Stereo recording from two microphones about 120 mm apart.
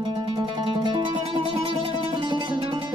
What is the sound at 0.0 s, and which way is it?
Music, 40° right (ahead or behind).